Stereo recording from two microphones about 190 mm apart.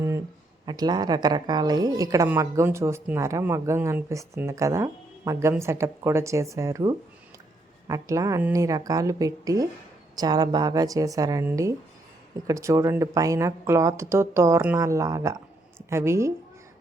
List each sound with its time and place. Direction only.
0.6 s a woman's voice: 20° right (ahead or behind)